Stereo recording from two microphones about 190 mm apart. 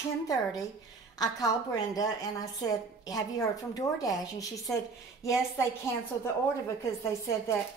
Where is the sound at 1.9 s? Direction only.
20° left (ahead or behind).